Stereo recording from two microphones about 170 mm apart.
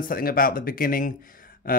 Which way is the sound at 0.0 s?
55° left (ahead or behind).